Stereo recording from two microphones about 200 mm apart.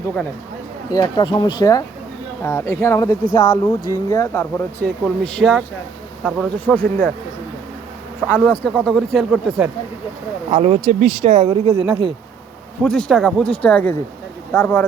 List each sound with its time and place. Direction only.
0.9 s speech: 20° left (ahead or behind)
8.4 s speech: 5° left (ahead or behind)
10.5 s speech: 35° right (ahead or behind)
12.8 s speech: 5° left (ahead or behind)